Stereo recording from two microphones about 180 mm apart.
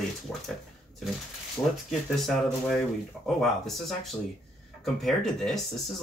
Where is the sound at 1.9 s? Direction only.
Centre (ahead or behind).